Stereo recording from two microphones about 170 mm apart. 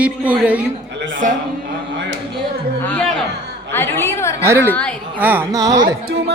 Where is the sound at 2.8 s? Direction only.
5° left (ahead or behind).